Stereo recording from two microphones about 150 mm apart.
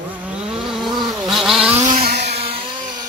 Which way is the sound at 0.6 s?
Centre (ahead or behind).